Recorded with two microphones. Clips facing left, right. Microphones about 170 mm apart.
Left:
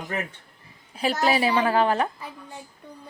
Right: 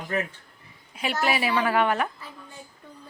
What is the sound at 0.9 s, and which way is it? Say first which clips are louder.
A woman's voice: left 3 dB; 35° left (ahead or behind).